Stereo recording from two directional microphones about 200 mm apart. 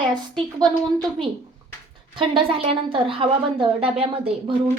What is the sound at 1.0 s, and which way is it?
Speech, 25° right (ahead or behind).